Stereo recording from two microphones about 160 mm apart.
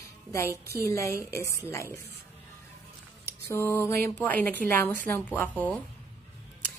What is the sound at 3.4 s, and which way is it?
A woman's voice, 15° left (ahead or behind).